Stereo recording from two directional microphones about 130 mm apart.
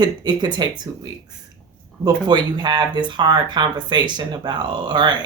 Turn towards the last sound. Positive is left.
turn(degrees=-35)  # may be behind; listen again after turning